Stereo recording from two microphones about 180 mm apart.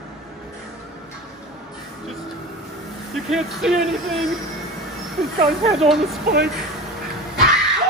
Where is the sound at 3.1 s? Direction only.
Centre (ahead or behind).